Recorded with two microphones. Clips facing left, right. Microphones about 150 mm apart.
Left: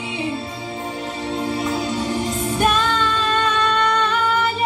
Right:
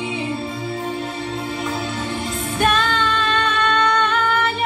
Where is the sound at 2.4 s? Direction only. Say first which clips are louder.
Right 1 dB; 10° left (ahead or behind).